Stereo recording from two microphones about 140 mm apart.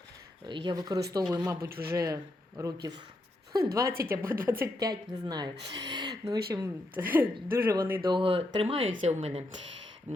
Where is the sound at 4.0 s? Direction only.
25° right (ahead or behind).